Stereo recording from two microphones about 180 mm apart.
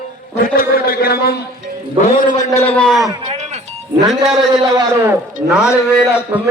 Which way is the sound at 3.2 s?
40° right (ahead or behind).